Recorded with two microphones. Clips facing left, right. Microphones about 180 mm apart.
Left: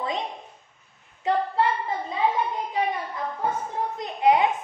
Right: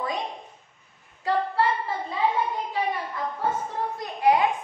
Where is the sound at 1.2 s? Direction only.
20° left (ahead or behind).